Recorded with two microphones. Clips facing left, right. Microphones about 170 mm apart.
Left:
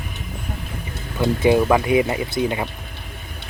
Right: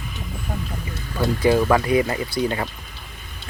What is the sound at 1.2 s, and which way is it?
Speech, 20° left (ahead or behind).